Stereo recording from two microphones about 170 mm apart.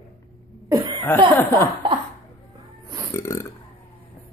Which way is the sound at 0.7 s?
25° right (ahead or behind).